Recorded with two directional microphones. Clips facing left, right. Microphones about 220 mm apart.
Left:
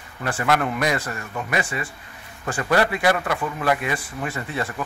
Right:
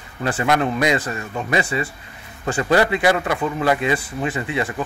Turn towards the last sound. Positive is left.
turn(degrees=-15)  # may be behind; listen again after turning